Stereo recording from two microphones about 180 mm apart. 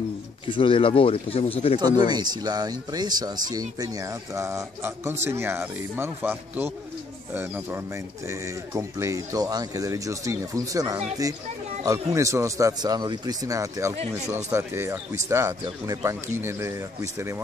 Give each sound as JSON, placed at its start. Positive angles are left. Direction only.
{"t": 0.5, "sound": "speech", "side_deg": 30}
{"t": 1.8, "sound": "speech", "side_deg": -25}
{"t": 13.9, "sound": "speech", "side_deg": -35}
{"t": 14.6, "sound": "speech", "side_deg": -15}